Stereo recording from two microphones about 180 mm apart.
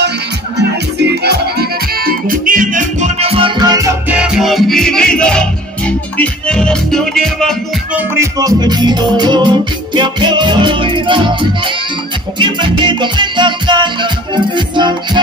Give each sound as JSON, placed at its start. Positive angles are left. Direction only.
{"t": 1.2, "sound": "music", "side_deg": -60}
{"t": 4.2, "sound": "music", "side_deg": 0}
{"t": 7.9, "sound": "music", "side_deg": -15}